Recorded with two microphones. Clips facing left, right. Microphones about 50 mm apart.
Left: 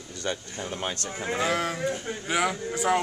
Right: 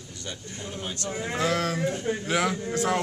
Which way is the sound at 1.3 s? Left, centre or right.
Centre.